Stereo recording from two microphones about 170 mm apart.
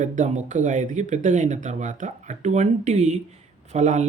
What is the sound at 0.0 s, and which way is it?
Speech, 45° right (ahead or behind).